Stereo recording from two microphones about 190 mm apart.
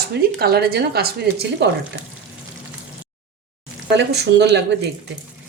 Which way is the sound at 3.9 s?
60° right (ahead or behind).